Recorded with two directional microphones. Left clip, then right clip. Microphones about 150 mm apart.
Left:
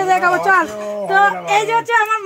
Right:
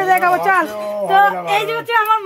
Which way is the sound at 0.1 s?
45° right (ahead or behind).